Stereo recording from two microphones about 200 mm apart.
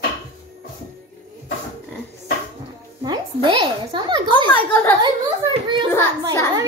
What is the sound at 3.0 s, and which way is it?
A woman's voice, 20° right (ahead or behind).